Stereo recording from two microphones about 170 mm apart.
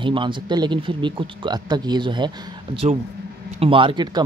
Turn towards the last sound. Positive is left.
turn(degrees=-30)  # may be behind; listen again after turning